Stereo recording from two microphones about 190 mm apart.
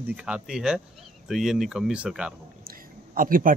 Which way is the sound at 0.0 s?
5° right (ahead or behind).